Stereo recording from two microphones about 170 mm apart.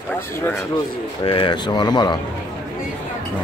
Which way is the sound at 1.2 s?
30° left (ahead or behind).